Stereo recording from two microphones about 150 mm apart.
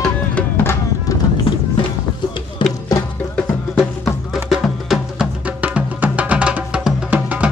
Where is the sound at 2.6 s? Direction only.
30° left (ahead or behind).